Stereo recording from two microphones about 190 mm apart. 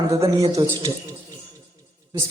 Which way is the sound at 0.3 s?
15° right (ahead or behind).